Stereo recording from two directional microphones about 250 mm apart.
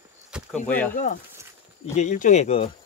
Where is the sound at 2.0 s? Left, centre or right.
Left.